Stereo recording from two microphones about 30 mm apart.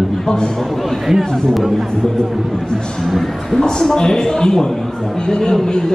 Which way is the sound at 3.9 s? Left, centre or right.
Left.